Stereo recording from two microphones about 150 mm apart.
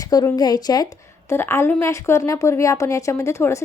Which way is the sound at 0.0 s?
25° left (ahead or behind).